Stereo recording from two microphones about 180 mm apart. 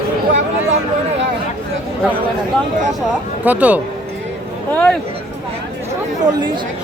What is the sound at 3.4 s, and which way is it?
Speech, 10° right (ahead or behind).